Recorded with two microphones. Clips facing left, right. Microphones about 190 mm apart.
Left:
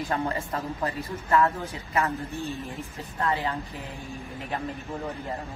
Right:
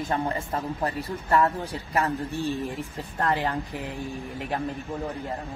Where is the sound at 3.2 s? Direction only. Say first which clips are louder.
Right 2 dB; 65° right (ahead or behind).